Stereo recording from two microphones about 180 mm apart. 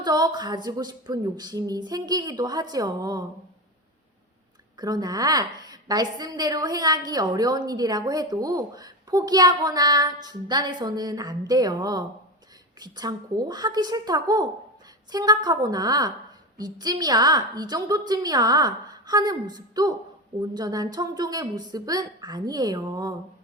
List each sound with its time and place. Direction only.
0.0 s a woman's voice: 25° right (ahead or behind)
4.8 s a woman's voice: 20° right (ahead or behind)